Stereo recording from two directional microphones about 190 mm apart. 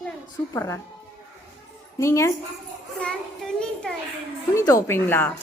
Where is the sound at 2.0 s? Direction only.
15° left (ahead or behind).